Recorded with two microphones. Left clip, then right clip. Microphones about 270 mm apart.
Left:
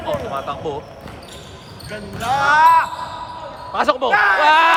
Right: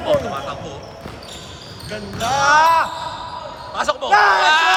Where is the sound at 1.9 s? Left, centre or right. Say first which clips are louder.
Even; centre.